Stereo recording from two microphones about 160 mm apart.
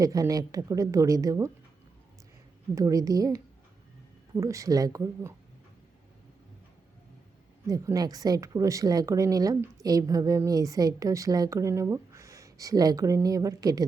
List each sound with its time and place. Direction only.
0.0 s a woman's voice: 20° right (ahead or behind)
2.7 s a woman's voice: 20° right (ahead or behind)
7.7 s a woman's voice: 20° right (ahead or behind)